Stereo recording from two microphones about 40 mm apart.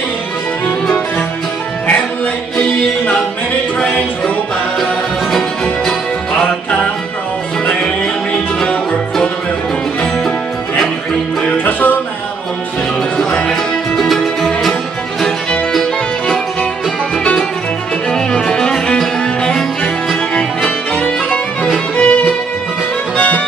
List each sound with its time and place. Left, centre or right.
6.4 s music: centre
8.5 s music: centre
11.5 s music: left
13.5 s music: centre
15.7 s music: centre
19.4 s music: left
20.9 s music: left